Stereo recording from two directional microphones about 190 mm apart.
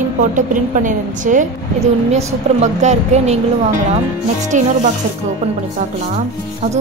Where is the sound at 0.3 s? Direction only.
40° right (ahead or behind).